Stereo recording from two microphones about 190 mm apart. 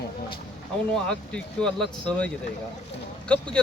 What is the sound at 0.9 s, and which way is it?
Speech, 5° left (ahead or behind).